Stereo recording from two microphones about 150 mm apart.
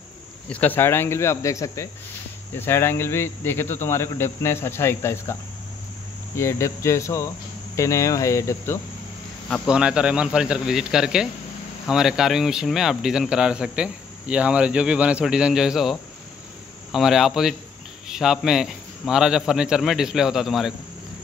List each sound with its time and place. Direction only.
0.5 s speech: 10° left (ahead or behind)
6.3 s cricket: 20° left (ahead or behind)
9.7 s speech: 5° right (ahead or behind)